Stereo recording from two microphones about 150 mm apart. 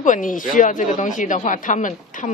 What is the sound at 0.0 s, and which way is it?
Speech, 60° left (ahead or behind).